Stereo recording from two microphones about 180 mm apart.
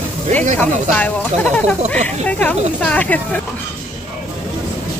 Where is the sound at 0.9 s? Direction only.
10° left (ahead or behind).